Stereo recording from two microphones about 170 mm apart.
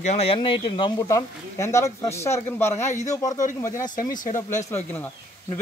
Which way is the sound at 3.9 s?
50° left (ahead or behind).